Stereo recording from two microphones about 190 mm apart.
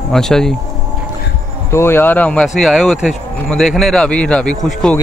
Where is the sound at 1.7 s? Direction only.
15° left (ahead or behind).